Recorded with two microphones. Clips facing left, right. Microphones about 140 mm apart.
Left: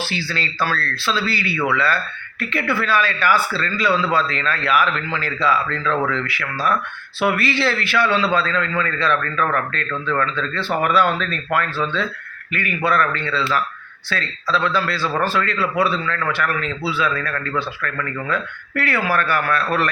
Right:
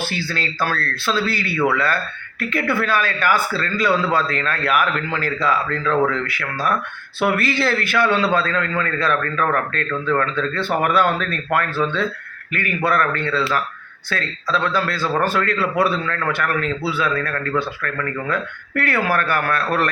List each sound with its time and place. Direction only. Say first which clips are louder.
0.0 s speech: right 1 dB; 50° right (ahead or behind)